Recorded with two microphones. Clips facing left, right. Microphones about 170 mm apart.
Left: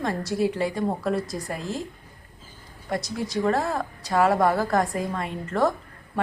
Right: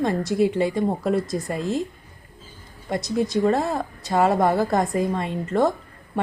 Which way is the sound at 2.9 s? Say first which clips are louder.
Right 5 dB; 20° right (ahead or behind).